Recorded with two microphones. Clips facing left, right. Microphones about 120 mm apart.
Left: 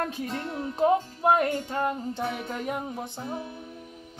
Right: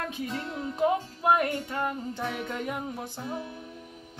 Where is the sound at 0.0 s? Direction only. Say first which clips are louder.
Left 2 dB; 40° left (ahead or behind).